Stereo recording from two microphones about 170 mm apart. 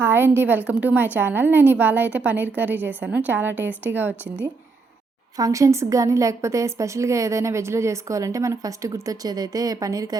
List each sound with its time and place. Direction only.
0.0 s a woman's voice: 15° right (ahead or behind)
5.4 s a woman's voice: 20° right (ahead or behind)